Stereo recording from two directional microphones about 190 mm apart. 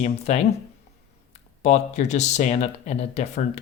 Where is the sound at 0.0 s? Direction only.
35° left (ahead or behind).